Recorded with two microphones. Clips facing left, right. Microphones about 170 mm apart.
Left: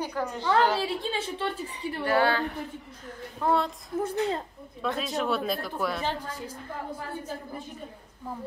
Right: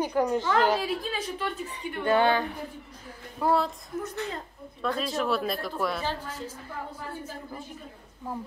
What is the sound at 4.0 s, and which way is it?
Speech, 30° left (ahead or behind).